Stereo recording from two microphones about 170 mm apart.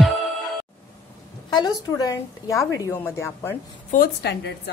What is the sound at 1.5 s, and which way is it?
A woman's voice, 20° left (ahead or behind).